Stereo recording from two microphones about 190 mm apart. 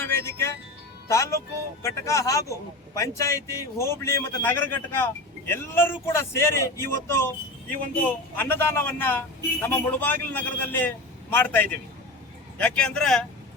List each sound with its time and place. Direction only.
0.0 s a man's voice: 15° left (ahead or behind)